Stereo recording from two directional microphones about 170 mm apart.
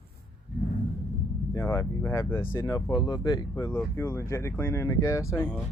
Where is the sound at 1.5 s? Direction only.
15° left (ahead or behind).